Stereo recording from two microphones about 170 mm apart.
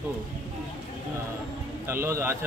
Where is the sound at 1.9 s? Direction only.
15° right (ahead or behind).